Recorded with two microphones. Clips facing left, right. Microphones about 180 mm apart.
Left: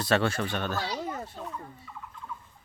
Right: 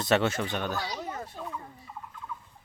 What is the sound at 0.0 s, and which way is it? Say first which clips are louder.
Speech: right 1 dB; 20° right (ahead or behind).